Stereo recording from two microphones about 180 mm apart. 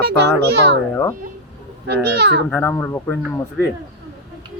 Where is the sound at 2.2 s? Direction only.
70° right (ahead or behind).